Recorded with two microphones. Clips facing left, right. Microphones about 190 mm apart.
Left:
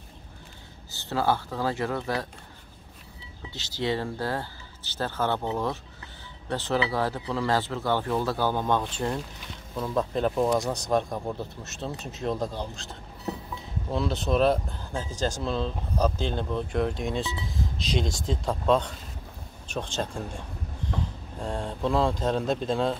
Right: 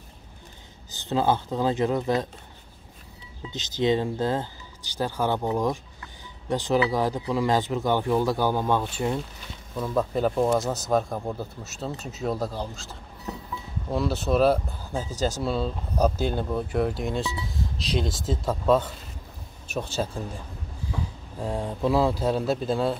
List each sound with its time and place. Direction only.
0.9 s speech: 20° right (ahead or behind)
3.5 s speech: 20° right (ahead or behind); by 12.9 s 5° right (ahead or behind)
13.9 s speech: 5° right (ahead or behind)